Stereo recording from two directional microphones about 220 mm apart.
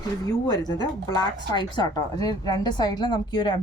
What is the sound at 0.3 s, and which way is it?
A woman's voice, 15° left (ahead or behind).